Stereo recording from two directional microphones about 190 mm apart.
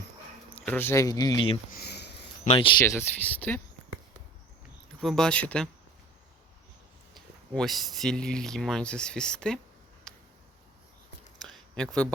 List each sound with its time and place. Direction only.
0.5 s speech: 10° left (ahead or behind)
1.7 s sniff: 60° left (ahead or behind)
2.4 s speech: 30° left (ahead or behind)
2.9 s speech: 10° left (ahead or behind)
4.9 s speech: centre (ahead or behind)
7.1 s speech: centre (ahead or behind)
10.1 s a sound: 5° left (ahead or behind)
11.4 s a sound: 5° left (ahead or behind)